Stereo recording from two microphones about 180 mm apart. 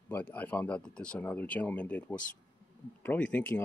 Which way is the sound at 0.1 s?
10° left (ahead or behind).